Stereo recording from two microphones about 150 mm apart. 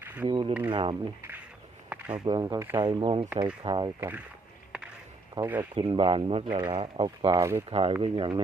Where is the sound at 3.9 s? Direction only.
15° right (ahead or behind).